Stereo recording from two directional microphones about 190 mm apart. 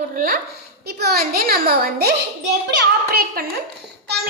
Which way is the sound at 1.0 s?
55° right (ahead or behind).